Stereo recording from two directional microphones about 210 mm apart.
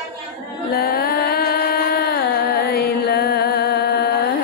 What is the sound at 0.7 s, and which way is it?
Carnatic music, 45° left (ahead or behind).